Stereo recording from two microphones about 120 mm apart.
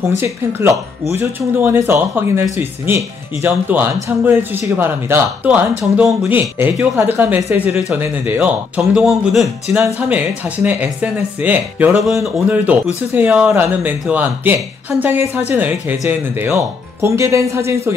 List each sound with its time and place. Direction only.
0.2 s speech: 20° right (ahead or behind)